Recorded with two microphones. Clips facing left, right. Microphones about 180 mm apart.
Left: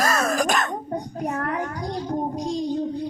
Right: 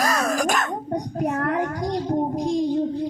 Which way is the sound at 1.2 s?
65° right (ahead or behind).